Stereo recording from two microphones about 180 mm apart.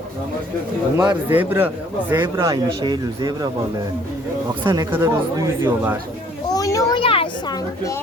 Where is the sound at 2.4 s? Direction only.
25° right (ahead or behind).